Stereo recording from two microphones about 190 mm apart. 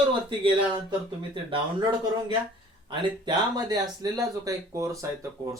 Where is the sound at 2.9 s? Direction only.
20° right (ahead or behind).